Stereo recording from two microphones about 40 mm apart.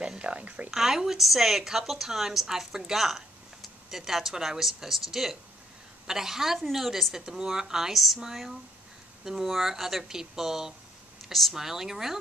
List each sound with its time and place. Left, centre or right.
0.0 s a sound: right
0.4 s a woman's voice: right
0.7 s a woman's voice: centre